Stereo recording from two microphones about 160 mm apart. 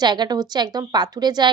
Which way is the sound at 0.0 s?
25° right (ahead or behind).